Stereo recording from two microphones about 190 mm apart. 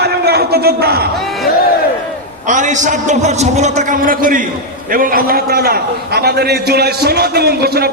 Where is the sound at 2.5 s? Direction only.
40° right (ahead or behind).